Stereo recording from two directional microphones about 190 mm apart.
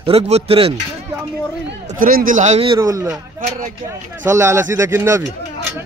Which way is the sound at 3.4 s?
40° right (ahead or behind).